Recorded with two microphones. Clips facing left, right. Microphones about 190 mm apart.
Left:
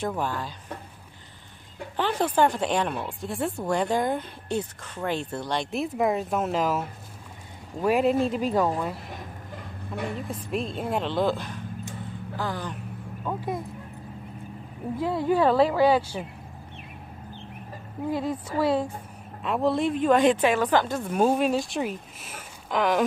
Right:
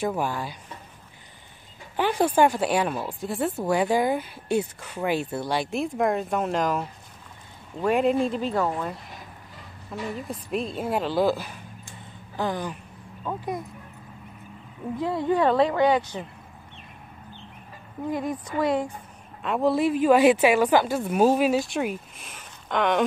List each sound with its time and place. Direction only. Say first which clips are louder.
0.0 s speech: right 2 dB; 10° right (ahead or behind)
2.0 s a woman's voice: right 2 dB; 10° right (ahead or behind); by 8.7 s 10° left (ahead or behind)
8.7 s speech: left 1 dB; centre (ahead or behind)
12.4 s speech: right 4 dB; 15° right (ahead or behind)
13.2 s speech: even; centre (ahead or behind)
15.0 s speech: even; 5° left (ahead or behind)
18.6 s speech: even; 5° left (ahead or behind)